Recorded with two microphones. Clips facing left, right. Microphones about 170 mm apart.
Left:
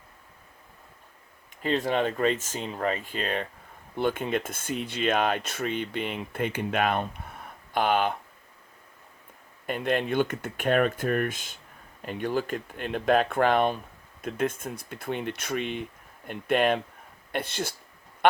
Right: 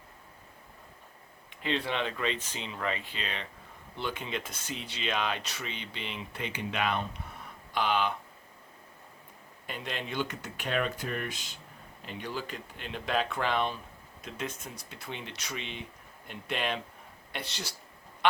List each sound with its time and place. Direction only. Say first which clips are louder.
1.6 s speech: left 6 dB; 45° left (ahead or behind)
9.6 s speech: left 11 dB; 50° left (ahead or behind)